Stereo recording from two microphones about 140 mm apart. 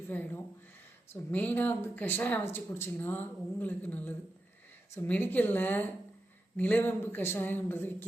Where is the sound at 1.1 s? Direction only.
15° left (ahead or behind).